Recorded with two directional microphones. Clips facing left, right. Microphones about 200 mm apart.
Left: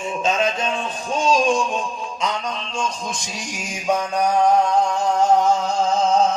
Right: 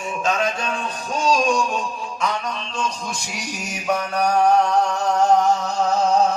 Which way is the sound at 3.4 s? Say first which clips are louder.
Right 1 dB; 15° left (ahead or behind).